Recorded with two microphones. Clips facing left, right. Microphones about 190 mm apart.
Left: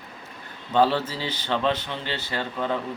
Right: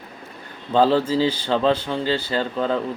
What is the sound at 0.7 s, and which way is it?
Speech, 30° right (ahead or behind).